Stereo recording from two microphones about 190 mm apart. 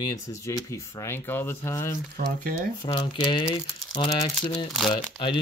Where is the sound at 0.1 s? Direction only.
15° left (ahead or behind).